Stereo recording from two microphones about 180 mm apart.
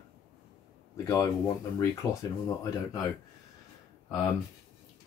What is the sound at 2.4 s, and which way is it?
Speech, 20° left (ahead or behind).